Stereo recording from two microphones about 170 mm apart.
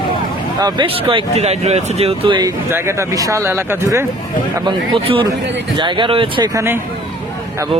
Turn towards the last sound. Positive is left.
turn(degrees=-15)  # may be behind; listen again after turning